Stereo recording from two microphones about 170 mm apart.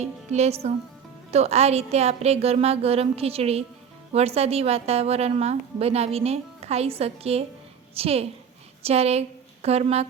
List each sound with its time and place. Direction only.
0.0 s a woman's voice: 40° right (ahead or behind)